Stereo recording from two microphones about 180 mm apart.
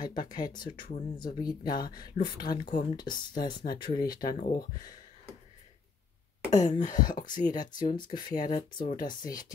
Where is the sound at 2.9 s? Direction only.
25° left (ahead or behind).